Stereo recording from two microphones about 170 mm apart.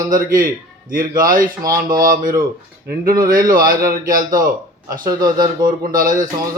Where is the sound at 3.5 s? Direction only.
55° right (ahead or behind).